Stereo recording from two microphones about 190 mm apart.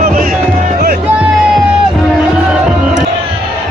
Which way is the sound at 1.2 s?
5° right (ahead or behind).